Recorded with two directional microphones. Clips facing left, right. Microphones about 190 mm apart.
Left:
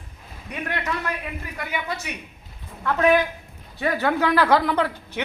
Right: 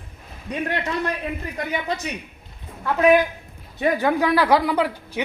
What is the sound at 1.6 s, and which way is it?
Speech, 35° right (ahead or behind).